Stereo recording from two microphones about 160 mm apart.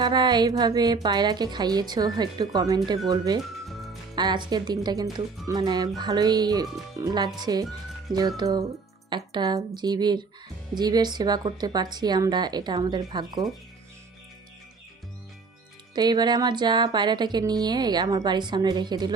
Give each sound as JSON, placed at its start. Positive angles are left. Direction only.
{"t": 0.0, "sound": "speech", "side_deg": -30}
{"t": 3.7, "sound": "music", "side_deg": 0}
{"t": 4.1, "sound": "speech", "side_deg": -25}
{"t": 16.0, "sound": "speech", "side_deg": -25}